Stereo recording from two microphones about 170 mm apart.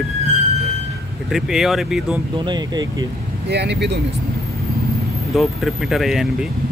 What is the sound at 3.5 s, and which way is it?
Speech, 80° right.